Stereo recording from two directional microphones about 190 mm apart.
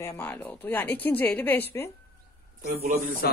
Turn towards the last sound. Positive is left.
turn(degrees=-45)  # may be behind; listen again after turning